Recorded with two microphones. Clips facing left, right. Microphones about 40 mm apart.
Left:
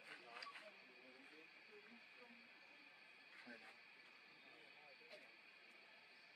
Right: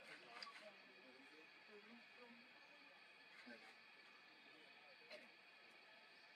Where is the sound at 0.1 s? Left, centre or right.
Centre.